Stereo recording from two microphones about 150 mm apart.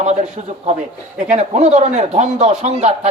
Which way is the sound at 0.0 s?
50° right (ahead or behind).